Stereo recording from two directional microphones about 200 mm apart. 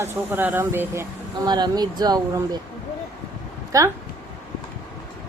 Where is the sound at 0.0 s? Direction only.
10° right (ahead or behind).